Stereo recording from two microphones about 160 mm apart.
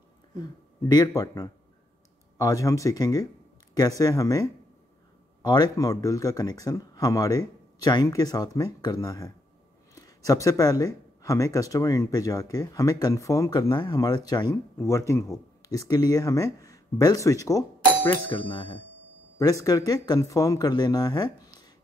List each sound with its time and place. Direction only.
0.8 s speech: 25° left (ahead or behind)